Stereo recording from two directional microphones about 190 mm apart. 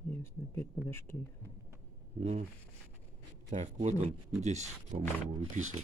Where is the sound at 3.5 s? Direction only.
40° right (ahead or behind).